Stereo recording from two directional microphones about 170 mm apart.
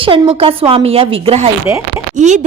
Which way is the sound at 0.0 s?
30° right (ahead or behind).